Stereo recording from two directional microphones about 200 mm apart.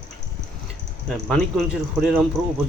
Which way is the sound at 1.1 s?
Centre (ahead or behind).